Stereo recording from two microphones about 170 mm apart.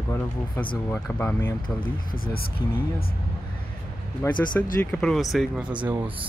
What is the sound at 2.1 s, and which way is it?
Speech, 60° left (ahead or behind).